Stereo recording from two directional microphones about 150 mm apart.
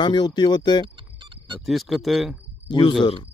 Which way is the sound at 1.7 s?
Centre (ahead or behind).